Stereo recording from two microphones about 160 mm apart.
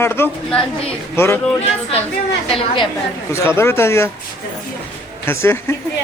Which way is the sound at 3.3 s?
15° left (ahead or behind).